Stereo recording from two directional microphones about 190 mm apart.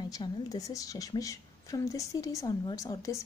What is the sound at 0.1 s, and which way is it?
A woman's voice, 20° left (ahead or behind).